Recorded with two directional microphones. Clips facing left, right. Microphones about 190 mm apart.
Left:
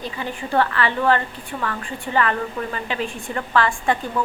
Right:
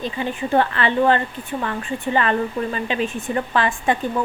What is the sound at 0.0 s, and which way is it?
A woman's voice, 20° right (ahead or behind).